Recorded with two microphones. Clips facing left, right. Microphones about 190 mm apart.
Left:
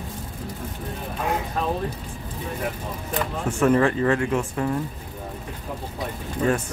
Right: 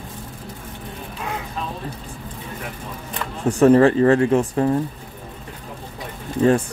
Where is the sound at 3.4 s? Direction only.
35° right (ahead or behind).